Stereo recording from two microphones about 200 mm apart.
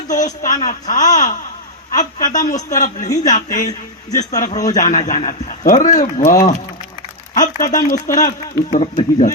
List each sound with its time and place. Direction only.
0.4 s a woman's voice: 40° left (ahead or behind)
7.3 s a woman's voice: 40° left (ahead or behind)